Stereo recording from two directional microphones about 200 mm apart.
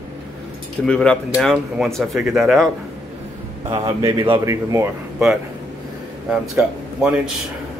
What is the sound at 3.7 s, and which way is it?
Speech, 25° right (ahead or behind).